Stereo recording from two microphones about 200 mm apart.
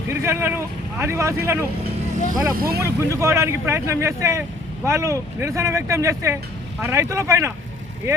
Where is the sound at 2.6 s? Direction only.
50° right (ahead or behind).